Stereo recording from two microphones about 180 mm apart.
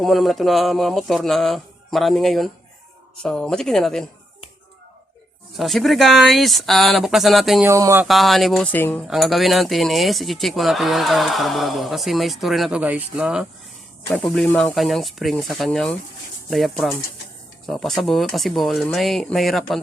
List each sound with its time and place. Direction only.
0.0 s speech: centre (ahead or behind)
5.5 s speech: centre (ahead or behind)
7.6 s a sound: 15° right (ahead or behind)
8.0 s speech: centre (ahead or behind)
9.0 s speech: centre (ahead or behind)